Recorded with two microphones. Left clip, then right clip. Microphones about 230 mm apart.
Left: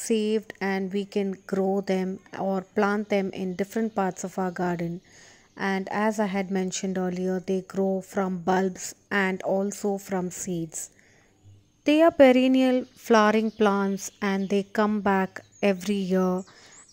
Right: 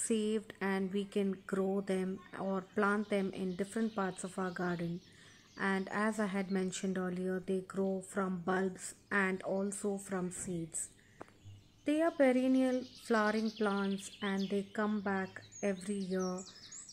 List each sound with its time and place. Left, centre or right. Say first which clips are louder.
0.0 s a woman's voice: left 10 dB; left
11.8 s speech: left 13 dB; left